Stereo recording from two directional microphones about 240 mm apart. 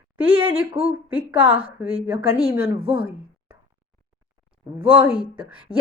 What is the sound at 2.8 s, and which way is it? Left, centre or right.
Speech, right.